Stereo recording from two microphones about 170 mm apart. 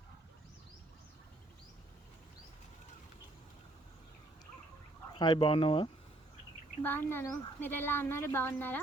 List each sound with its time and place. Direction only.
5.1 s speech: 25° left (ahead or behind)
6.8 s speech: 15° left (ahead or behind)